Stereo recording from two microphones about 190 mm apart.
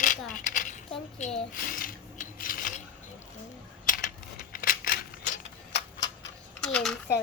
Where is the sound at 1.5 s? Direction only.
50° left (ahead or behind).